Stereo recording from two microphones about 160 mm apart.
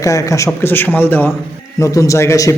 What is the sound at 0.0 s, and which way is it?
A man's voice, 20° left (ahead or behind).